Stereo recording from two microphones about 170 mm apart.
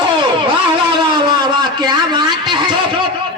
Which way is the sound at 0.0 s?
30° right (ahead or behind).